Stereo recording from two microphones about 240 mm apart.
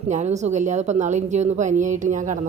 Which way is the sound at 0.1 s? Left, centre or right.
Right.